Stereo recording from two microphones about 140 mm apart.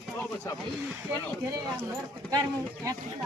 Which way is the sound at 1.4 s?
25° right (ahead or behind).